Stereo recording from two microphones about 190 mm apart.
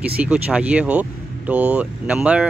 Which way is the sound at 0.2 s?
5° right (ahead or behind).